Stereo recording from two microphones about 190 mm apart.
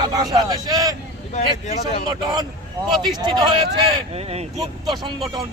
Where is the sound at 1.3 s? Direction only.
35° left (ahead or behind).